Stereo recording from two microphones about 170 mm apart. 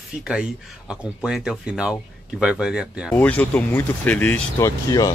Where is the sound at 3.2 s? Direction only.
10° left (ahead or behind).